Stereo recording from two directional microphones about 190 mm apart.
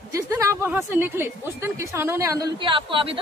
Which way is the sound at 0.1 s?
15° right (ahead or behind).